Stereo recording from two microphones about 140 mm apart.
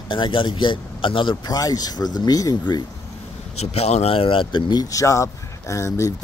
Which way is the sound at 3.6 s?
50° left (ahead or behind).